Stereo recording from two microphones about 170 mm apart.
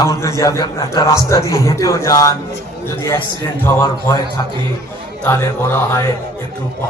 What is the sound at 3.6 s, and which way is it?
Speech, 15° left (ahead or behind).